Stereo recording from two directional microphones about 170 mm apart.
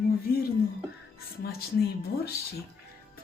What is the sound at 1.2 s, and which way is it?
Speech, 65° left (ahead or behind).